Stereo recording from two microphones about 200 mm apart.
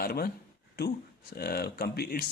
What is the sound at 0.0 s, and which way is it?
A man's voice, 50° left (ahead or behind).